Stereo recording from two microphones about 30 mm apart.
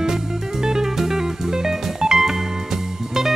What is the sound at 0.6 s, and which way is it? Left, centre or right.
Music, centre.